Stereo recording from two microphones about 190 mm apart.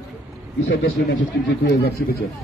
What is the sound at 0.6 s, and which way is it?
Speech, 90° left.